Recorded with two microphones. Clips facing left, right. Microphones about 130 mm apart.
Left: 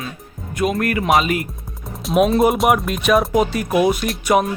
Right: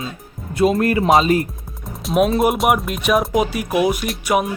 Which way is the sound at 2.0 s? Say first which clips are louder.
Left 1 dB; centre (ahead or behind).